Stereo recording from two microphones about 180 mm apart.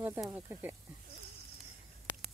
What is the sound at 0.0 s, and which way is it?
Speech, 10° right (ahead or behind).